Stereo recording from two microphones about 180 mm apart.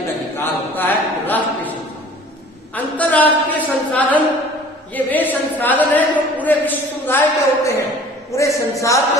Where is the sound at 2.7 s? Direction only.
10° left (ahead or behind).